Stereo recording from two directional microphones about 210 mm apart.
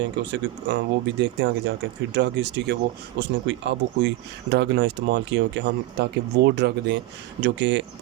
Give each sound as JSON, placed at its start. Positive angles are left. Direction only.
{"t": 0.2, "sound": "speech", "side_deg": -55}